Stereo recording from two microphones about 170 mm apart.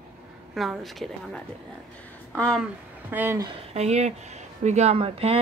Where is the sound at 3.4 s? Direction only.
40° right (ahead or behind).